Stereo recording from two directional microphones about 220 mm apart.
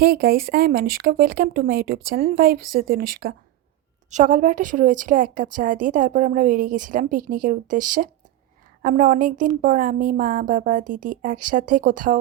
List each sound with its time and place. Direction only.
0.0 s a woman's voice: 45° right (ahead or behind)